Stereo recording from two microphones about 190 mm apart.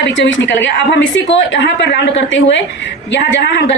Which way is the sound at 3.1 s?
60° left (ahead or behind).